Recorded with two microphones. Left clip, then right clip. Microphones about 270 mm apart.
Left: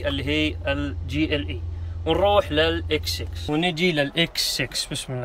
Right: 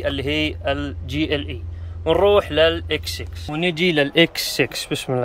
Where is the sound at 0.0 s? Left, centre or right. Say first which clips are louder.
Right 2 dB; centre.